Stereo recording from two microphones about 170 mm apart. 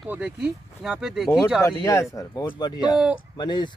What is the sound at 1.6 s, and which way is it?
Speech, 20° left (ahead or behind).